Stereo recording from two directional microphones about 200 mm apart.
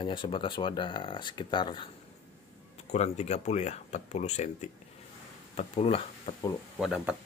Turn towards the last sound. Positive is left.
turn(degrees=0)  # may be behind; listen again after turning